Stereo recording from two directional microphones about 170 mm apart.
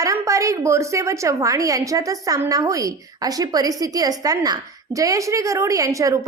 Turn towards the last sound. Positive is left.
turn(degrees=-20)  # may be behind; listen again after turning